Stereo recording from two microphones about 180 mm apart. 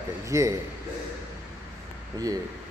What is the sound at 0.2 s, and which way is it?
Speech, 15° right (ahead or behind).